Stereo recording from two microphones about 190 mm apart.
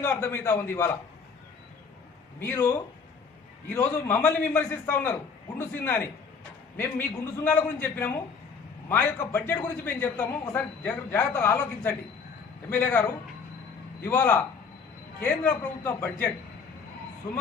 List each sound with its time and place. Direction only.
0.0 s a man's voice: 10° left (ahead or behind)
2.4 s a man's voice: 15° left (ahead or behind)
3.8 s a man's voice: 15° left (ahead or behind)
7.3 s a man's voice: 10° left (ahead or behind)